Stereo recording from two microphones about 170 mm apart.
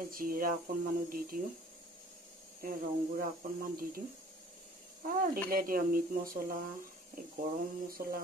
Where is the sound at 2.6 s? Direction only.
55° right (ahead or behind).